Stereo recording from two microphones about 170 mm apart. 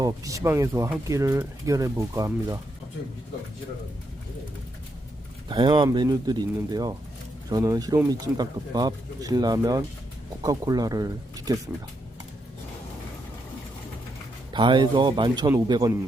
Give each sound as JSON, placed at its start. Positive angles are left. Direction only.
{"t": 0.0, "sound": "speech", "side_deg": -20}
{"t": 5.5, "sound": "speech", "side_deg": -30}
{"t": 14.5, "sound": "speech", "side_deg": -25}